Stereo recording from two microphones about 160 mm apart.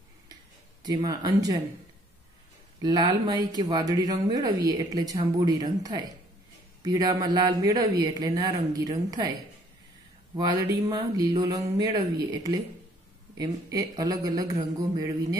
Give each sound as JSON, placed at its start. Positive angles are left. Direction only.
{"t": 0.8, "sound": "speech", "side_deg": -25}
{"t": 2.8, "sound": "speech", "side_deg": -25}
{"t": 10.3, "sound": "speech", "side_deg": -25}